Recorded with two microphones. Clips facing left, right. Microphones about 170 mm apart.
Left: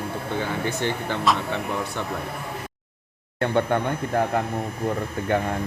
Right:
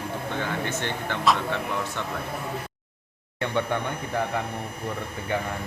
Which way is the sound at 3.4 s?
50° left (ahead or behind).